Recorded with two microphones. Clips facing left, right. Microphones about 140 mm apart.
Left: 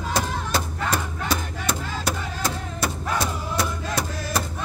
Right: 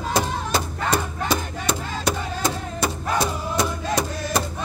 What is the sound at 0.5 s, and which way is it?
Battle cry, centre (ahead or behind).